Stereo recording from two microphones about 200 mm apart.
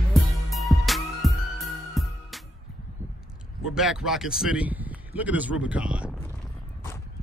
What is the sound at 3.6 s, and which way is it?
Speech, 5° right (ahead or behind).